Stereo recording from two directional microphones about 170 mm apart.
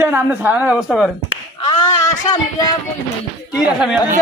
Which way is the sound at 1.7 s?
25° left (ahead or behind).